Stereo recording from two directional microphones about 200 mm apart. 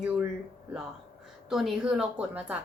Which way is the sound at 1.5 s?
Centre (ahead or behind).